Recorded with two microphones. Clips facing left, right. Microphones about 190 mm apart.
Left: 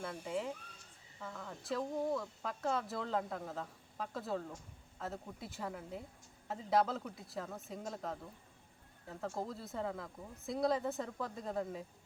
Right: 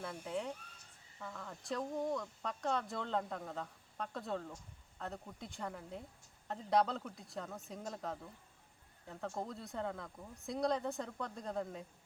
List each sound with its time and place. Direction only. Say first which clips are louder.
0.0 s speech: left 1 dB; centre (ahead or behind)